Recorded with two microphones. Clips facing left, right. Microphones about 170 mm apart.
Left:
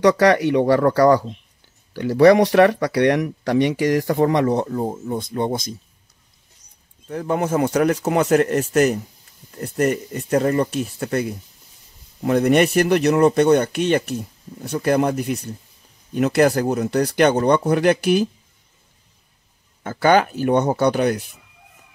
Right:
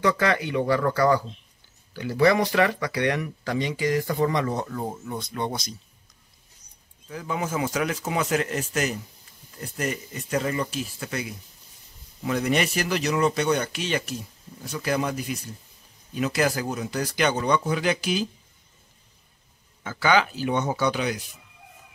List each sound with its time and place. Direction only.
0.2 s speech: 75° left (ahead or behind)
0.7 s speech: 40° left (ahead or behind)
2.1 s speech: 70° left (ahead or behind)
4.6 s speech: 35° left (ahead or behind)
5.5 s speech: 50° left (ahead or behind)
7.1 s speech: 60° left (ahead or behind)
19.8 s speech: 50° left (ahead or behind)